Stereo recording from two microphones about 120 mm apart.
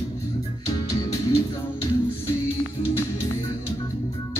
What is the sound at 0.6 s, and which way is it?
Music, 30° left (ahead or behind).